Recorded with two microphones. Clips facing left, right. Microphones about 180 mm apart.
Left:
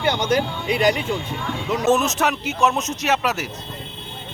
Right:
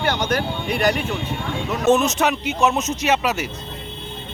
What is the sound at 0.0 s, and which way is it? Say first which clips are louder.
Speech: left 2 dB; 20° left (ahead or behind).